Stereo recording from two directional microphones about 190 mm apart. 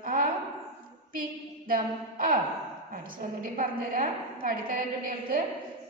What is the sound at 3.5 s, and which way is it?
A woman's voice, 45° right (ahead or behind).